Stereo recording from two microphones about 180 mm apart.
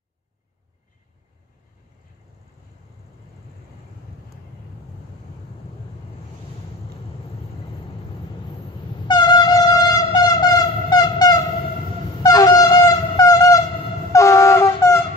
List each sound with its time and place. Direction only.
9.0 s train: 25° left (ahead or behind)